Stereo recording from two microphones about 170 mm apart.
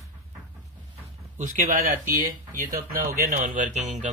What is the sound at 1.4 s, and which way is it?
Speech, 50° right (ahead or behind).